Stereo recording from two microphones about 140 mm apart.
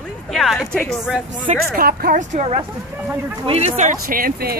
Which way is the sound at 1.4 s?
90° right.